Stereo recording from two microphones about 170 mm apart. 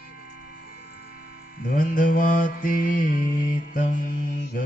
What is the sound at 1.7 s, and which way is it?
Mantra, 55° left (ahead or behind).